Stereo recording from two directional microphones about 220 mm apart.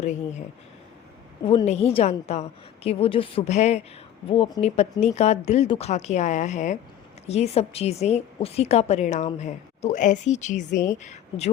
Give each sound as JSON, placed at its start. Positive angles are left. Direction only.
{"t": 0.0, "sound": "a woman's voice", "side_deg": 30}
{"t": 1.5, "sound": "a woman's voice", "side_deg": 30}